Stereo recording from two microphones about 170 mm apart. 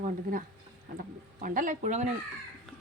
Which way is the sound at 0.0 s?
55° right (ahead or behind).